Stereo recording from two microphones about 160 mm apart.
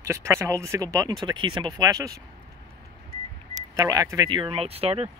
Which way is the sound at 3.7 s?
20° right (ahead or behind).